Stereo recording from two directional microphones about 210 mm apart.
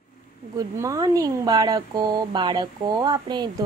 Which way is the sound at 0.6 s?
15° right (ahead or behind).